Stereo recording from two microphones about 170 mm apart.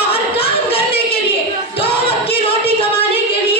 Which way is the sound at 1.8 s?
35° left (ahead or behind).